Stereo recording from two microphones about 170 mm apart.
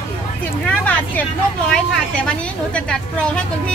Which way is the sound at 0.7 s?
10° left (ahead or behind).